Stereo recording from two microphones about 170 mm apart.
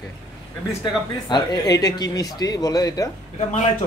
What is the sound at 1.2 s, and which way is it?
Speech, 25° left (ahead or behind).